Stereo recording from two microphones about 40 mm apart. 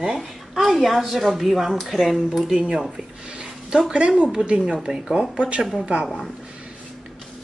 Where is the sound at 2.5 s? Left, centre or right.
Centre.